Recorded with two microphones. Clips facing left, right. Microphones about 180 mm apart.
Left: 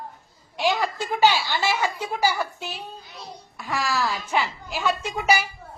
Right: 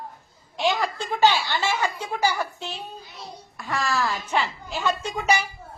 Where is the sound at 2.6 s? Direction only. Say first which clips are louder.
Even; centre (ahead or behind).